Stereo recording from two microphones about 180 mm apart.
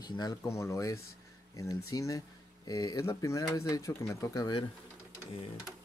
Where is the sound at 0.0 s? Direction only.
20° left (ahead or behind).